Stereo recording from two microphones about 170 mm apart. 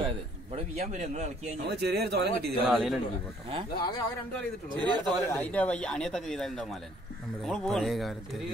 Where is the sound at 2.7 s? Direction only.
Centre (ahead or behind).